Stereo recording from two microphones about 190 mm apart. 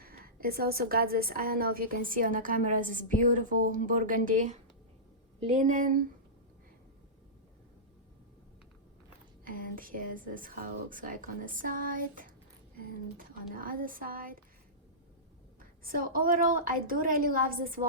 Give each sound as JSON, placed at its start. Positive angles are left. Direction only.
{"t": 0.0, "sound": "a woman's voice", "side_deg": -50}
{"t": 9.4, "sound": "a woman's voice", "side_deg": -45}
{"t": 15.8, "sound": "a woman's voice", "side_deg": -50}